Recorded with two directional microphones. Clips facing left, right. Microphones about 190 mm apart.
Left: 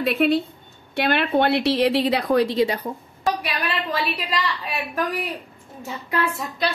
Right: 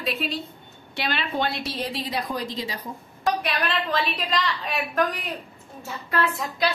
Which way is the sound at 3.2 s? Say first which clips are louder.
Even; 10° left (ahead or behind).